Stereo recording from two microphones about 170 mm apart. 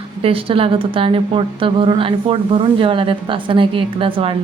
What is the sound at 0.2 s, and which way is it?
A woman's voice, 35° right (ahead or behind).